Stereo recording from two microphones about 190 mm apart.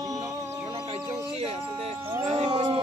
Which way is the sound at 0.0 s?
15° right (ahead or behind).